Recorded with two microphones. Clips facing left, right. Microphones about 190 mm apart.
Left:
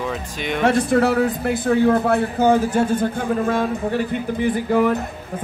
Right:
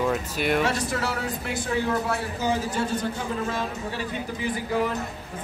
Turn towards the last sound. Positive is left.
turn(degrees=55)  # may be behind; listen again after turning